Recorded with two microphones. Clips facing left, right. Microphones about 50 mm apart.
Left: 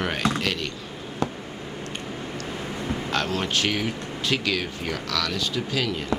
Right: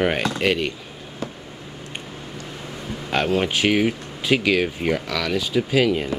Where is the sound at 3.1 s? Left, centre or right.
Centre.